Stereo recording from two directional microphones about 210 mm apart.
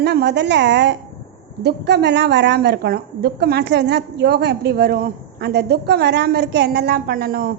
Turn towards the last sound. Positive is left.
turn(degrees=-45)  # may be behind; listen again after turning